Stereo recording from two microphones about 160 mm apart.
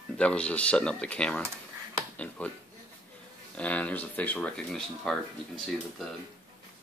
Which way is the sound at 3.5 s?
10° left (ahead or behind).